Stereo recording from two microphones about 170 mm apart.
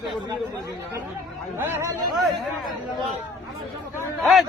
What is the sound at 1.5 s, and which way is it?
Speech, 15° right (ahead or behind).